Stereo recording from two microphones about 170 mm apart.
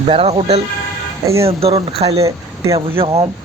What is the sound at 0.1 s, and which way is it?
Speech, 35° right (ahead or behind).